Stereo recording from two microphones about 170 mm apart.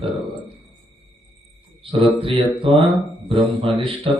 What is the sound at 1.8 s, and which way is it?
Speech, 30° right (ahead or behind).